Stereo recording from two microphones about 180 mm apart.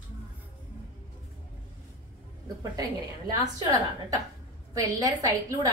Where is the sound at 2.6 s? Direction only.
20° right (ahead or behind).